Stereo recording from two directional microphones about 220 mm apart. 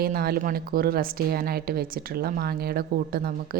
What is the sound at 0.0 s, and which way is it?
A woman's voice, 40° right (ahead or behind).